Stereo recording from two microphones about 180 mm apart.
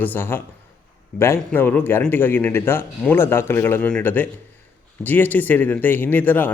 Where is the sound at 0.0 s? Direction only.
10° left (ahead or behind).